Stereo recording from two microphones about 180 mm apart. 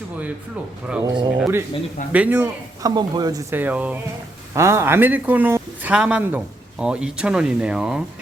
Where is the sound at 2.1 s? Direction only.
10° right (ahead or behind).